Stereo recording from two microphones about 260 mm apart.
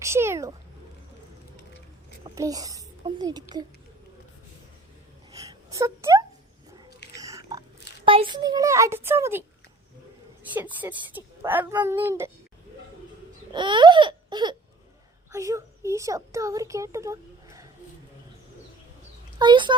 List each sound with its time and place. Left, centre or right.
0.0 s speech: centre
2.2 s a child's voice: centre
5.3 s a sound: centre
8.0 s speech: centre
10.5 s speech: centre
13.5 s baby cry: centre
15.3 s a child's voice: centre
19.4 s speech: centre